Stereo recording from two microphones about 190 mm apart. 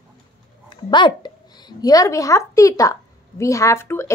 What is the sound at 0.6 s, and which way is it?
A woman's voice, 25° left (ahead or behind).